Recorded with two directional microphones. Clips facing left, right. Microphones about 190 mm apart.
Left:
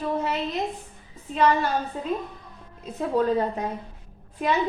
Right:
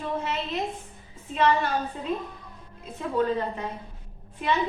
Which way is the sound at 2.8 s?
40° left (ahead or behind).